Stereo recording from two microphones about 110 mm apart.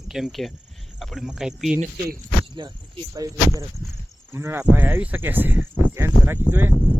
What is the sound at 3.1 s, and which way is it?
Speech, 30° right (ahead or behind).